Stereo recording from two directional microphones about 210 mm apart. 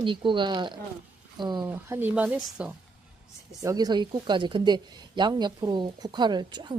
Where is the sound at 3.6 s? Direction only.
15° right (ahead or behind).